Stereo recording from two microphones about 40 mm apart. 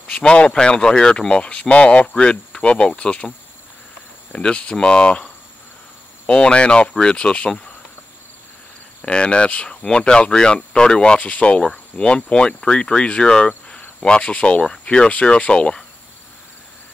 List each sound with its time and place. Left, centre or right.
0.0 s speech: left
4.3 s speech: left
9.0 s speech: left